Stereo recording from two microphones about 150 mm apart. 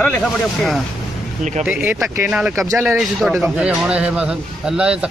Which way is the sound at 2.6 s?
20° right (ahead or behind).